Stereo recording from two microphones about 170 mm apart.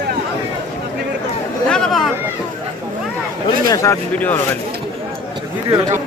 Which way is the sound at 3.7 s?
20° left (ahead or behind).